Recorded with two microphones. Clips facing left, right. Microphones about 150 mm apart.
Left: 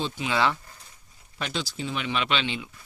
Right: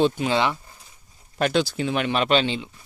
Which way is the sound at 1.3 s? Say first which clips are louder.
Right 10 dB; 55° right (ahead or behind).